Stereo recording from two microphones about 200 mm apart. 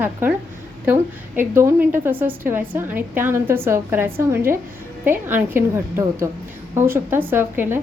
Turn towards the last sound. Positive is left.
turn(degrees=-10)  # may be behind; listen again after turning